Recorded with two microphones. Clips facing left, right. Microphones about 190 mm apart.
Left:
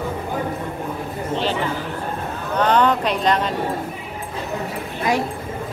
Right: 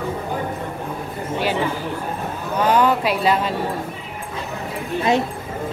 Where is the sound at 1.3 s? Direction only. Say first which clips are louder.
Right 1 dB; 10° right (ahead or behind).